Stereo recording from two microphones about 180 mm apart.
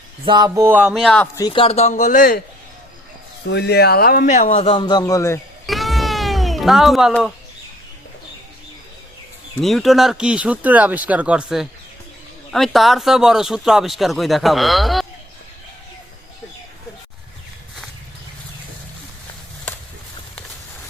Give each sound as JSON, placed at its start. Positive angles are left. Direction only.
{"t": 0.3, "sound": "a sound", "side_deg": -20}
{"t": 1.4, "sound": "speech", "side_deg": 25}
{"t": 3.4, "sound": "a man's voice", "side_deg": 70}
{"t": 5.6, "sound": "cat", "side_deg": 0}
{"t": 9.6, "sound": "speech", "side_deg": 0}